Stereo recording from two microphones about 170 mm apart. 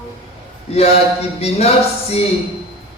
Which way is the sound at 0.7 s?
40° left (ahead or behind).